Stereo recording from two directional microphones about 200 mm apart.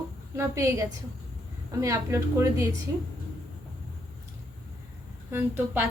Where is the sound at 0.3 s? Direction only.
15° right (ahead or behind).